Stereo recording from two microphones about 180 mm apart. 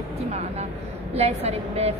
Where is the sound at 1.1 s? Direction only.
35° right (ahead or behind).